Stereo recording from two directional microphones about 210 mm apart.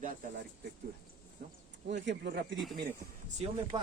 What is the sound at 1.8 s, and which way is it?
Speech, 55° right (ahead or behind).